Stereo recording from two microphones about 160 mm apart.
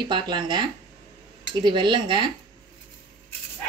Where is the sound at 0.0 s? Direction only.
30° right (ahead or behind).